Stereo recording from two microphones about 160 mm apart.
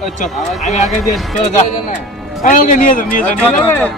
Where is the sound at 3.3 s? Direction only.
10° left (ahead or behind).